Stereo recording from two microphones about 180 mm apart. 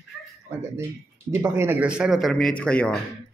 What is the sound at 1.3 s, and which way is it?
Speech, 15° right (ahead or behind).